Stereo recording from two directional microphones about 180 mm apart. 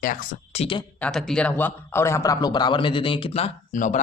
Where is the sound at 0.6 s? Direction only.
30° left (ahead or behind).